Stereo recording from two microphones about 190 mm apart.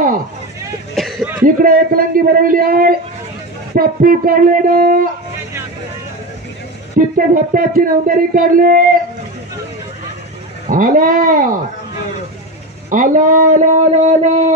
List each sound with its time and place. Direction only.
0.9 s a sound: centre (ahead or behind)
1.4 s speech: 45° right (ahead or behind)
7.0 s speech: 45° right (ahead or behind)
10.7 s speech: 45° right (ahead or behind)
12.9 s speech: 45° right (ahead or behind)